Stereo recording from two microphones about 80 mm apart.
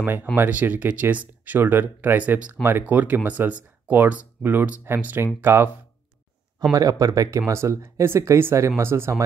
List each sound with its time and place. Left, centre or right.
0.0 s speech: right
6.7 s speech: right